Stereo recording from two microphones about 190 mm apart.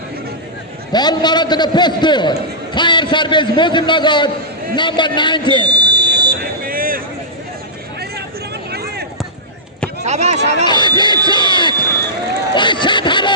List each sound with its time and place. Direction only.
0.9 s a man's voice: 20° left (ahead or behind)
5.6 s buzzer: 20° right (ahead or behind)
6.4 s vehicle: 50° right (ahead or behind)
8.7 s a sound: 55° right (ahead or behind)
10.0 s speech: 35° right (ahead or behind)
10.7 s a man's voice: 25° left (ahead or behind)
11.3 s a sound: 25° left (ahead or behind)
12.5 s snicker: 25° left (ahead or behind)